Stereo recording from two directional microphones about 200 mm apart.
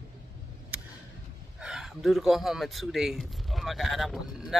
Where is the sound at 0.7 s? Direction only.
10° right (ahead or behind).